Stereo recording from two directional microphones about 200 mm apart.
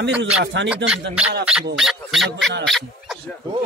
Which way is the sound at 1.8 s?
Centre (ahead or behind).